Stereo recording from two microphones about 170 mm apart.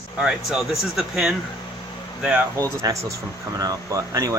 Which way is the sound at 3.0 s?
20° right (ahead or behind).